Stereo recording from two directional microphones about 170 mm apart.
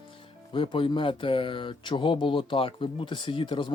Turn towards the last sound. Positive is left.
turn(degrees=30)  # may be behind; listen again after turning